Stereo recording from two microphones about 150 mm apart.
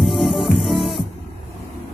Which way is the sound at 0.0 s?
Centre (ahead or behind).